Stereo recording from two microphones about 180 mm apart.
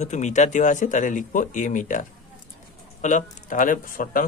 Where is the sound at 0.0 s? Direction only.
40° left (ahead or behind).